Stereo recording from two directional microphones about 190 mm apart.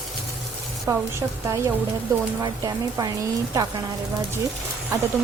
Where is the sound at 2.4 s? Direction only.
20° right (ahead or behind).